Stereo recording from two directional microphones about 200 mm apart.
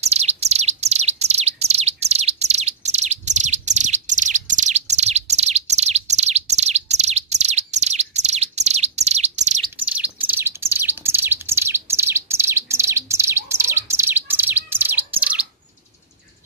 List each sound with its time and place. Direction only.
0.0 s bird: 35° right (ahead or behind)
9.8 s bird: 5° right (ahead or behind)